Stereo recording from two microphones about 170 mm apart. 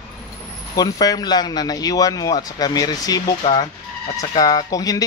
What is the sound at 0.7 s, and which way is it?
A man's voice, 20° left (ahead or behind).